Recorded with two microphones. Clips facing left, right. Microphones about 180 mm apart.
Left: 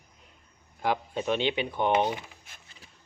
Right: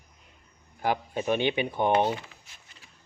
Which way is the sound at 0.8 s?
10° right (ahead or behind).